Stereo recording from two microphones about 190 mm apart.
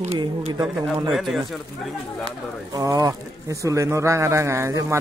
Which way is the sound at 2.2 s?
20° right (ahead or behind).